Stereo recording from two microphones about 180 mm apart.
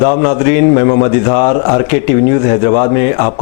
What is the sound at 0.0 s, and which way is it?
A man's voice, 30° left (ahead or behind).